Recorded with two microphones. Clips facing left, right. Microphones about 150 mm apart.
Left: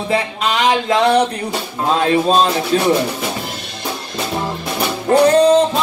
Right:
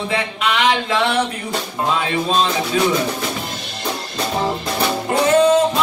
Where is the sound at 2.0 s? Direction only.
40° left (ahead or behind).